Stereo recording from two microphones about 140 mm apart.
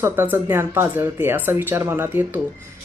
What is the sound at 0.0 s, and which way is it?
Speech, 15° right (ahead or behind).